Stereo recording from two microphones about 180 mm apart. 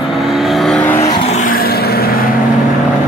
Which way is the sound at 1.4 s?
55° left (ahead or behind).